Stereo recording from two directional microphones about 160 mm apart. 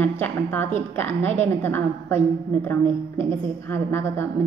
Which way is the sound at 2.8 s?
30° right (ahead or behind).